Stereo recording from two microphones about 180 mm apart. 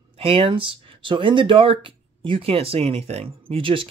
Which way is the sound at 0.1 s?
30° right (ahead or behind).